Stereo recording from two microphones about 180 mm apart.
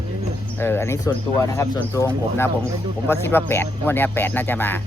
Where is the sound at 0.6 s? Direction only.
15° left (ahead or behind).